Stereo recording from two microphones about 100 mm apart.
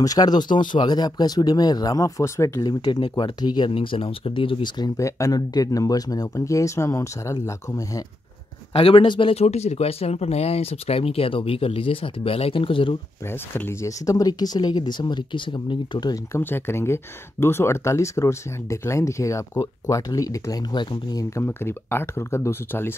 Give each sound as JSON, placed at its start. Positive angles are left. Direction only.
{"t": 0.0, "sound": "speech", "side_deg": 40}
{"t": 2.6, "sound": "speech", "side_deg": 45}
{"t": 3.7, "sound": "speech", "side_deg": 60}
{"t": 4.9, "sound": "speech", "side_deg": 30}
{"t": 8.7, "sound": "speech", "side_deg": 70}
{"t": 9.3, "sound": "speech", "side_deg": 90}
{"t": 13.3, "sound": "speech", "side_deg": 25}
{"t": 14.0, "sound": "speech", "side_deg": 40}
{"t": 16.3, "sound": "speech", "side_deg": 20}
{"t": 20.7, "sound": "speech", "side_deg": 50}
{"t": 21.4, "sound": "speech", "side_deg": 25}